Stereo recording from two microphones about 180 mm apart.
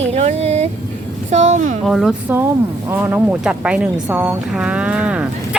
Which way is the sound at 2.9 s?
10° right (ahead or behind).